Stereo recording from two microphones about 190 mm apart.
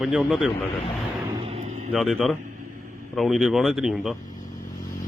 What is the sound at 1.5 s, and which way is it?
Vehicle, 35° right (ahead or behind).